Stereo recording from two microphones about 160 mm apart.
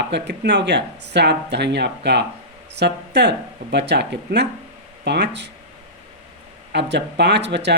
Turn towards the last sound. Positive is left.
turn(degrees=-90)